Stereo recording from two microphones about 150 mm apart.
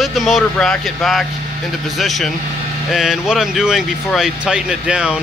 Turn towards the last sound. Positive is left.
turn(degrees=-5)  # may be behind; listen again after turning